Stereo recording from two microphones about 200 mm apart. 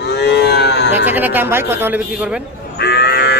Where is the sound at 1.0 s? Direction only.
10° right (ahead or behind).